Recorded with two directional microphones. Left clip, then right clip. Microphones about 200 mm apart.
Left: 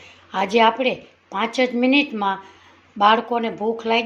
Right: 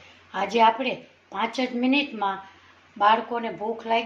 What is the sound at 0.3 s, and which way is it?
Speech, 40° left (ahead or behind).